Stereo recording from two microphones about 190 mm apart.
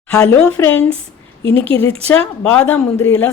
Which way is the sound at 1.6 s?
30° right (ahead or behind).